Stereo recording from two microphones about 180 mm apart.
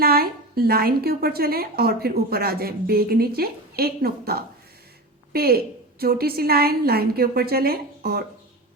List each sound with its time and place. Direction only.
0.0 s a woman's voice: 60° right (ahead or behind)